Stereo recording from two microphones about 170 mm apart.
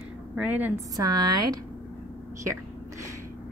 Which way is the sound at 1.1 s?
25° right (ahead or behind).